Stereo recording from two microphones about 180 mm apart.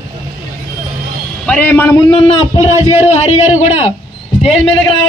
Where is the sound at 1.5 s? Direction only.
10° left (ahead or behind).